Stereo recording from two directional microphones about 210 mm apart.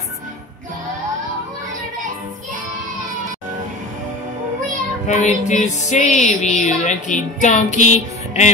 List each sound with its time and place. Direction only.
5.0 s music: 35° left (ahead or behind)